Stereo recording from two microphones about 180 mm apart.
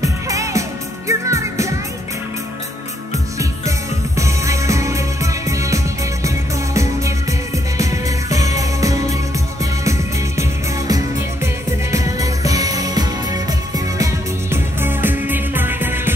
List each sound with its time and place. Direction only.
0.0 s music: 15° right (ahead or behind)
4.2 s music: 15° right (ahead or behind)